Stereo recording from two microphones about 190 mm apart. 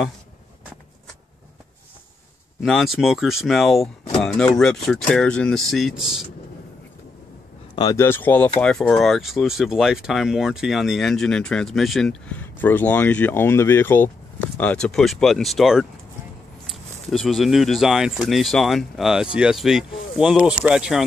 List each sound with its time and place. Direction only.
2.6 s speech: centre (ahead or behind)
7.7 s speech: 20° left (ahead or behind); by 21.0 s 5° right (ahead or behind)